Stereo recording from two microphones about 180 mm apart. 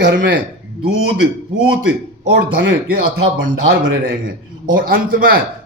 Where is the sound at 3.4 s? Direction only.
90° right.